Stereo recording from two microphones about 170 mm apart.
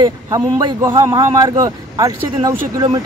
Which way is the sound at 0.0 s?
25° right (ahead or behind).